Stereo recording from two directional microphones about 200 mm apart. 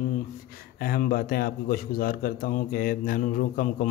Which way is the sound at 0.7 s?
45° left (ahead or behind).